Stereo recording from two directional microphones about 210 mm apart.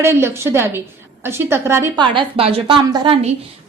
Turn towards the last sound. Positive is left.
turn(degrees=-25)  # may be behind; listen again after turning